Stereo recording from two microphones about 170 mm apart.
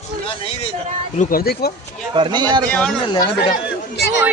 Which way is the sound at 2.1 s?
30° right (ahead or behind).